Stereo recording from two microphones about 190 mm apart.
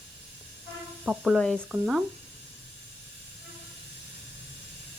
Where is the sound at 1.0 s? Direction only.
Centre (ahead or behind).